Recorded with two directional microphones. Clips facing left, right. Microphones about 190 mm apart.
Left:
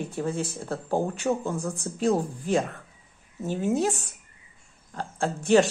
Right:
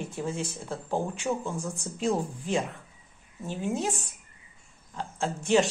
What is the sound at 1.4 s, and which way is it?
Speech, 35° left (ahead or behind).